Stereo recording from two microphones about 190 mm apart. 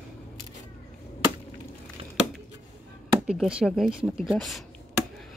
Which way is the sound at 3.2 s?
Centre (ahead or behind).